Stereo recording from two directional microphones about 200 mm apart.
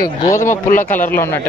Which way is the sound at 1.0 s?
10° left (ahead or behind).